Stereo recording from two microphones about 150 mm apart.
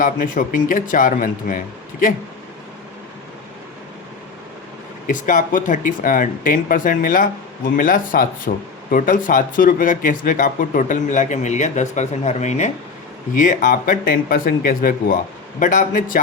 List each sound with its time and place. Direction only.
0.0 s speech: 65° left (ahead or behind)
5.0 s speech: 60° left (ahead or behind)
15.6 s speech: 60° left (ahead or behind)